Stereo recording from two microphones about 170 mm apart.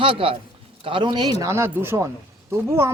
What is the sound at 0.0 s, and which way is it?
A man's voice, 30° right (ahead or behind).